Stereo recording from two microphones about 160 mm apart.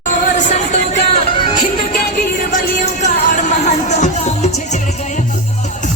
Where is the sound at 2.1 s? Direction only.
55° left (ahead or behind).